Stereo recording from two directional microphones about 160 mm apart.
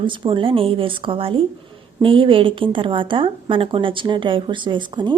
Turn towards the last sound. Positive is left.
turn(degrees=-30)  # may be behind; listen again after turning